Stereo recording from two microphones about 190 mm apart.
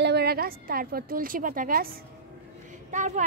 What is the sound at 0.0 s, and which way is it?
A woman's voice, 60° right (ahead or behind).